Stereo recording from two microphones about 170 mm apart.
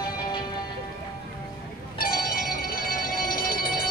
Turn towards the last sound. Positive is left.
turn(degrees=60)  # may be behind; listen again after turning